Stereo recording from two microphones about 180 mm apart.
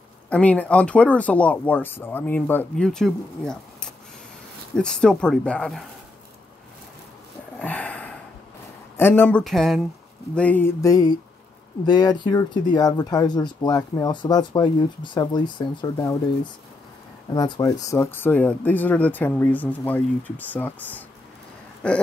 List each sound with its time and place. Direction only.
0.3 s speech: 5° left (ahead or behind)
7.5 s a sound: 10° left (ahead or behind)
8.9 s speech: 10° left (ahead or behind)
9.4 s speech: centre (ahead or behind); by 16.2 s 20° left (ahead or behind)
17.3 s speech: 20° left (ahead or behind)